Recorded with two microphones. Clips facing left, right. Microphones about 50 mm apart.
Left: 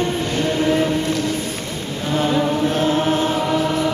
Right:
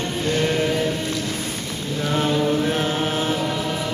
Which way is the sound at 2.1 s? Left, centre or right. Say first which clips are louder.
Left 2 dB; centre.